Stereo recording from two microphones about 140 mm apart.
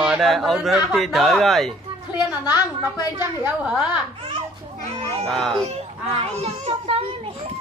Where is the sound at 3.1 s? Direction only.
10° right (ahead or behind).